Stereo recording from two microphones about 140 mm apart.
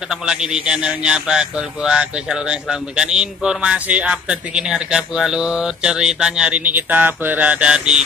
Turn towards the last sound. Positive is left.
turn(degrees=-5)  # may be behind; listen again after turning